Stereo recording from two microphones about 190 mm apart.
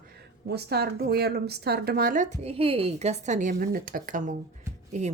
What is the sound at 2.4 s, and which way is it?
A woman's voice, 30° right (ahead or behind).